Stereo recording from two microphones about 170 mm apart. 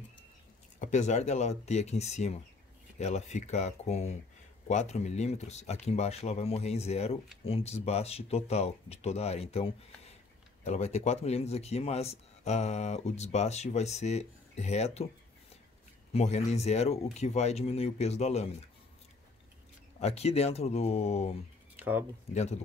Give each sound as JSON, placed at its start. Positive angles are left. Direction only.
{"t": 0.7, "sound": "speech", "side_deg": 45}
{"t": 16.1, "sound": "speech", "side_deg": 40}
{"t": 20.0, "sound": "speech", "side_deg": 40}
{"t": 21.7, "sound": "a sound", "side_deg": -10}
{"t": 22.3, "sound": "speech", "side_deg": 40}